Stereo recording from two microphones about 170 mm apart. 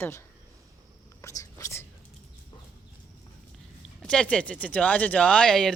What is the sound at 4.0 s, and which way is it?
Speech, 5° left (ahead or behind).